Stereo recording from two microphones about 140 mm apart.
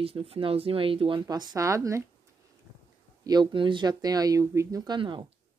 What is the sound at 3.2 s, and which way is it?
Speech, 30° right (ahead or behind).